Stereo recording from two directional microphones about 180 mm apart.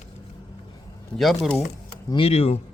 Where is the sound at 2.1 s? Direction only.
35° left (ahead or behind).